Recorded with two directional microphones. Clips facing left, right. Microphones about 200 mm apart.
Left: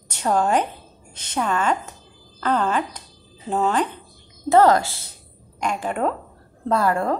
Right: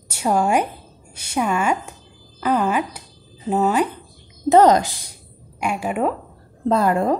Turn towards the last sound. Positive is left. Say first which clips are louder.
# right 3 dB
turn(degrees=-20)  # may be behind; listen again after turning